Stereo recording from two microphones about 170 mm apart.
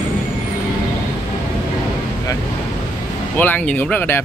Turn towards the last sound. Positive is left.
turn(degrees=10)  # may be behind; listen again after turning